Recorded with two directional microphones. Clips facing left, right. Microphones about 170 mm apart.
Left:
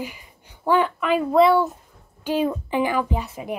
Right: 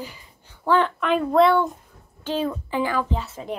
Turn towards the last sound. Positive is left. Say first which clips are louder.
# left 1 dB
turn(degrees=15)  # may be behind; listen again after turning